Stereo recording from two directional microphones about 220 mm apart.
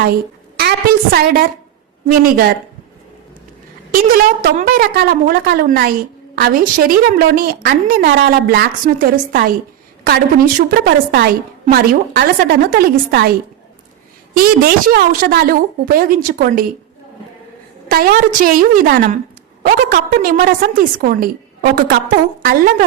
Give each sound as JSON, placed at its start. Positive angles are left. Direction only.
{"t": 0.0, "sound": "a woman's voice", "side_deg": -45}
{"t": 3.9, "sound": "a woman's voice", "side_deg": -40}
{"t": 14.3, "sound": "a woman's voice", "side_deg": -40}
{"t": 17.8, "sound": "a woman's voice", "side_deg": -40}